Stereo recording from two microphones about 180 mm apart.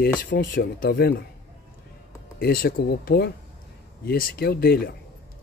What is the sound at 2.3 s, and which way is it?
Speech, 55° left (ahead or behind).